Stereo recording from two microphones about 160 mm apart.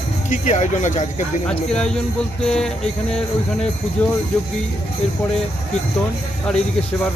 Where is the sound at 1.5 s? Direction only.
5° left (ahead or behind).